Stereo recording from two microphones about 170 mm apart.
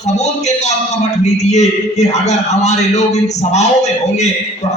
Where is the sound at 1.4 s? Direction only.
40° left (ahead or behind).